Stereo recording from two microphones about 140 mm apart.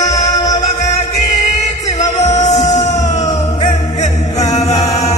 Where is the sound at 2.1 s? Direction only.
55° left (ahead or behind).